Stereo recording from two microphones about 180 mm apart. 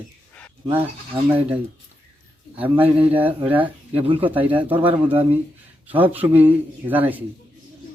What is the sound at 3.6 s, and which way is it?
Speech, 30° right (ahead or behind).